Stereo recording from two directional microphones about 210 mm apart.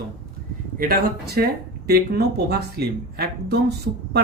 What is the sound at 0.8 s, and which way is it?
Speech, 45° right (ahead or behind).